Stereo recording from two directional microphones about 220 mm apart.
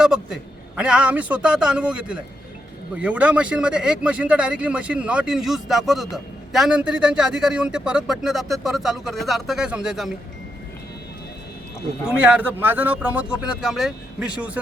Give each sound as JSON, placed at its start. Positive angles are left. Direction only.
{"t": 0.0, "sound": "speech", "side_deg": -5}
{"t": 12.0, "sound": "speech", "side_deg": -5}